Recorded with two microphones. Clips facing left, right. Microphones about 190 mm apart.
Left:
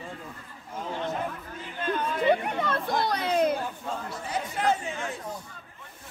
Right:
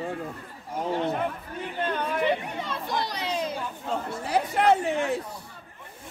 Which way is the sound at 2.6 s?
55° left (ahead or behind).